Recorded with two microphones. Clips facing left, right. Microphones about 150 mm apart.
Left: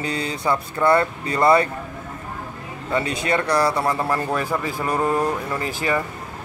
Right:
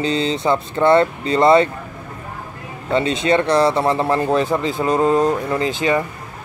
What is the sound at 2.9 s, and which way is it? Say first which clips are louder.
Speech: right 5 dB; 25° right (ahead or behind).